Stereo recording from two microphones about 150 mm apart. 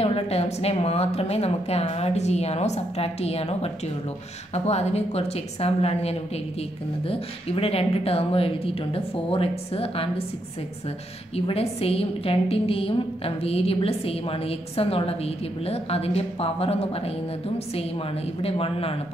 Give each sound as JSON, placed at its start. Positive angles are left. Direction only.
{"t": 0.0, "sound": "a woman's voice", "side_deg": 40}
{"t": 11.3, "sound": "a woman's voice", "side_deg": 40}
{"t": 18.4, "sound": "a woman's voice", "side_deg": 40}